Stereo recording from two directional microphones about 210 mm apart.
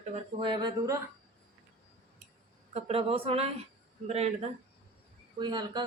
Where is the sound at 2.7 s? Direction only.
30° right (ahead or behind).